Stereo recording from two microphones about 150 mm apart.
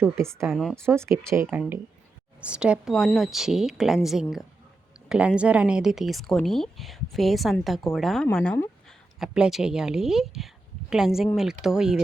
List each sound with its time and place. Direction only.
0.0 s speech: 20° right (ahead or behind)
0.5 s speech: centre (ahead or behind)
0.9 s speech: 15° right (ahead or behind)
2.4 s speech: 5° right (ahead or behind)